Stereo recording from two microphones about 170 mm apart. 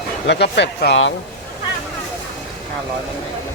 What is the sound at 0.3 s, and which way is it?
Speech, 85° left.